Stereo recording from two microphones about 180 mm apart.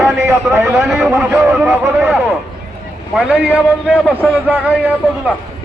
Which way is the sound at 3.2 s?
5° right (ahead or behind).